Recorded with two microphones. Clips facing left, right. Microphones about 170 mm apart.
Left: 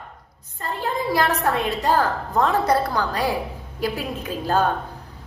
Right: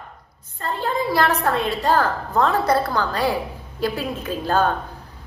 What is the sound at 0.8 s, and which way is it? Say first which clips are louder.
A woman's voice: right 1 dB; 15° left (ahead or behind).